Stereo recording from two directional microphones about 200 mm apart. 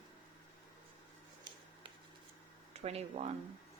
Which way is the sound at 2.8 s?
30° right (ahead or behind).